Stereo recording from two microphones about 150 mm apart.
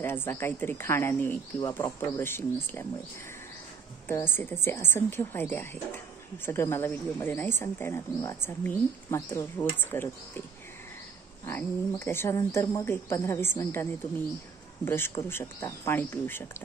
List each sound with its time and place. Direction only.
0.0 s speech: 15° left (ahead or behind)
4.1 s speech: 15° left (ahead or behind)
11.4 s speech: 15° left (ahead or behind)